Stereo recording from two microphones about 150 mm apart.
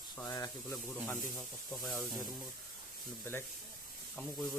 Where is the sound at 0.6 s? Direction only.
Centre (ahead or behind).